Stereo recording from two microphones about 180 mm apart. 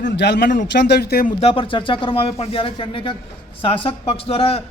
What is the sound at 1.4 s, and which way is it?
A woman's voice, 30° left (ahead or behind).